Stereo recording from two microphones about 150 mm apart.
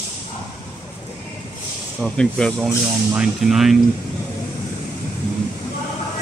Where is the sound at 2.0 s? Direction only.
5° left (ahead or behind).